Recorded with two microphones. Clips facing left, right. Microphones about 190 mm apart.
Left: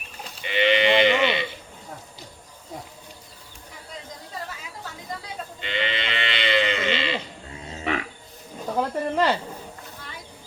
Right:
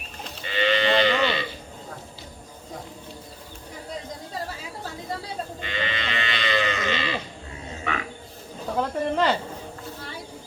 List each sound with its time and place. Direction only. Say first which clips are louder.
0.4 s sheep: left 2 dB; 20° left (ahead or behind)
5.6 s sheep: left 4 dB; 25° left (ahead or behind)
8.6 s snake: even; 5° left (ahead or behind)